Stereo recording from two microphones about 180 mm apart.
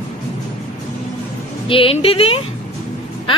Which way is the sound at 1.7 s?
30° left (ahead or behind).